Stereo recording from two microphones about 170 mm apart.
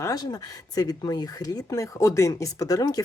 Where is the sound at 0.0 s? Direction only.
20° left (ahead or behind).